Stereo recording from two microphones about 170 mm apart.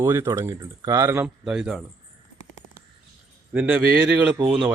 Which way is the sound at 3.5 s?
10° right (ahead or behind).